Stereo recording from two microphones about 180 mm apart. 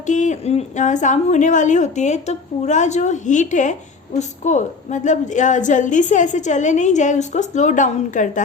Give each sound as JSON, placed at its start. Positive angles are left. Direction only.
{"t": 0.0, "sound": "a woman's voice", "side_deg": 40}